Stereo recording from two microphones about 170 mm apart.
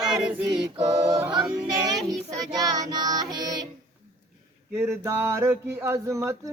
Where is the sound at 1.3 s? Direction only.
25° right (ahead or behind).